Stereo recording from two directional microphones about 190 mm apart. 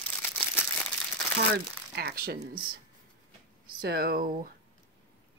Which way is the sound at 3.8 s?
55° right (ahead or behind).